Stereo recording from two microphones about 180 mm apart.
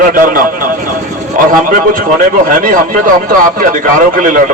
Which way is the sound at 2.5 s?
45° right (ahead or behind).